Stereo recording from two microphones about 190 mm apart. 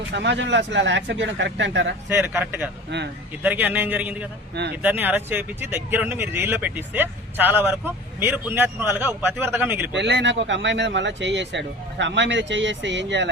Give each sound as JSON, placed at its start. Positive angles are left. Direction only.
{"t": 0.1, "sound": "speech", "side_deg": -70}
{"t": 2.0, "sound": "speech", "side_deg": -10}
{"t": 9.9, "sound": "speech", "side_deg": -65}